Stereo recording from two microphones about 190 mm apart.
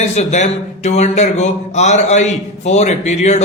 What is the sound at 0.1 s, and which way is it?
Speech, 35° left (ahead or behind).